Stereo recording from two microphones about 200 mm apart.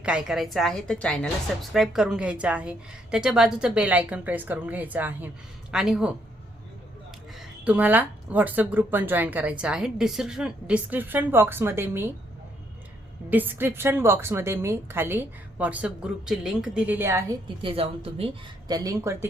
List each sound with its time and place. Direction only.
0.0 s a woman's voice: 5° right (ahead or behind)
7.6 s speech: 5° right (ahead or behind)
13.3 s speech: 10° right (ahead or behind)
17.6 s a woman's voice: 25° right (ahead or behind)